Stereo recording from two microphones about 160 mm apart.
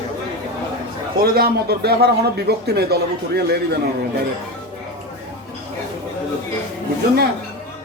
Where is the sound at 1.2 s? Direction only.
75° right (ahead or behind); by 3.7 s 90° right.